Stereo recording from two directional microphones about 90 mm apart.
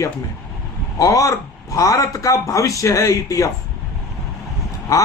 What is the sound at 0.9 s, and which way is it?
A man's voice, 40° left (ahead or behind).